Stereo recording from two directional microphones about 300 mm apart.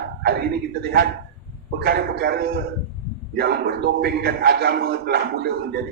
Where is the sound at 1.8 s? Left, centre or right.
Right.